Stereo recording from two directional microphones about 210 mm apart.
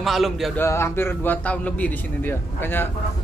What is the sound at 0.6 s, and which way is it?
A man's voice, 10° left (ahead or behind).